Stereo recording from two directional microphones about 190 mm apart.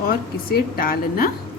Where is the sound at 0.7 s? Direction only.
50° left (ahead or behind).